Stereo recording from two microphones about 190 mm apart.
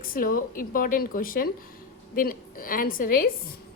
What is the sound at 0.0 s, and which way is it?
A woman's voice, 50° left (ahead or behind).